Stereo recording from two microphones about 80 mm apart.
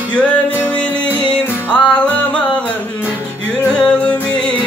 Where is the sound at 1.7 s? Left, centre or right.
Centre.